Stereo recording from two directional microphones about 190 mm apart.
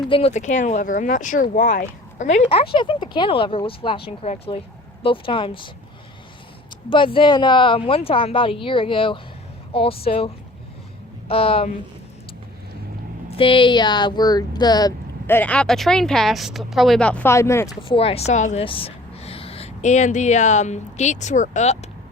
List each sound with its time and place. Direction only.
0.1 s speech: 35° left (ahead or behind)
6.9 s speech: 25° left (ahead or behind)
13.3 s speech: 30° left (ahead or behind)
17.8 s speech: 30° left (ahead or behind)